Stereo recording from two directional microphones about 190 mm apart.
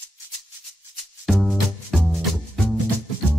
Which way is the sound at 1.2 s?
Centre (ahead or behind).